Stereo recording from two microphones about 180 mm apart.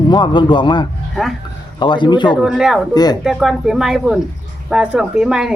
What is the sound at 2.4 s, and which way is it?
Speech, 5° right (ahead or behind).